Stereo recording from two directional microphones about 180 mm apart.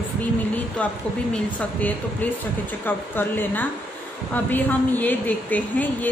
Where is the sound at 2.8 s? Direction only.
10° left (ahead or behind).